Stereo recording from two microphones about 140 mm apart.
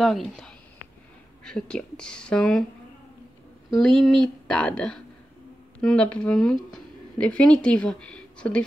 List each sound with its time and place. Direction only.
0.0 s speech: centre (ahead or behind)
3.7 s speech: centre (ahead or behind)